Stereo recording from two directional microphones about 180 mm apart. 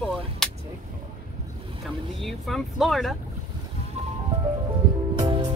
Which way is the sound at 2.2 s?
Centre (ahead or behind).